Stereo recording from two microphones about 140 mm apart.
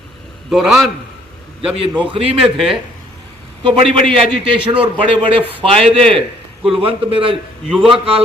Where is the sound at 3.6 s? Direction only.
40° right (ahead or behind).